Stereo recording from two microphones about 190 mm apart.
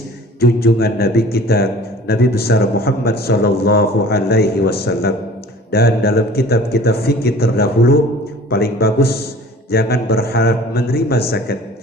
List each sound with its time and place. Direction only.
0.3 s a man's voice: 55° left (ahead or behind)